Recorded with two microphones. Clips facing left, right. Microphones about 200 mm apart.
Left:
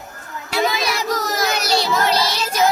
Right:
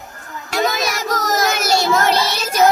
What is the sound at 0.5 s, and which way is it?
Child singing, 45° right (ahead or behind).